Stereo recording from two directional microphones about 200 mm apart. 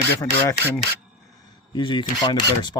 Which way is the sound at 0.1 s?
15° left (ahead or behind).